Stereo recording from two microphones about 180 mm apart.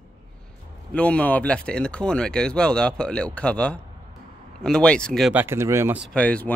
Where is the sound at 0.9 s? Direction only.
5° left (ahead or behind).